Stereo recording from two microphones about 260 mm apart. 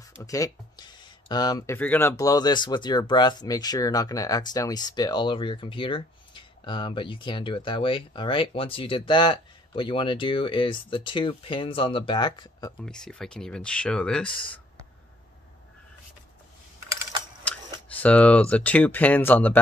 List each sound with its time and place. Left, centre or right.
0.2 s speech: centre
12.8 s speech: centre
17.4 s tick-tock: centre
17.8 s speech: centre